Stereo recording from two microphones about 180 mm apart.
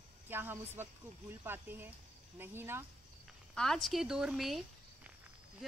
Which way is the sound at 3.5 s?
Centre (ahead or behind).